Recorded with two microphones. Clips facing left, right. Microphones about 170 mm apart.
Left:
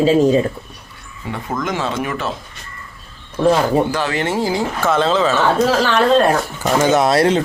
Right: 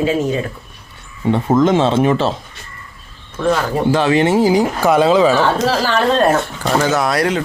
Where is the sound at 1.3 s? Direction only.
25° right (ahead or behind).